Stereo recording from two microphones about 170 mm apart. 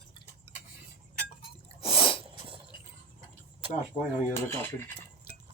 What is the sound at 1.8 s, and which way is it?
Sneeze, 30° left (ahead or behind).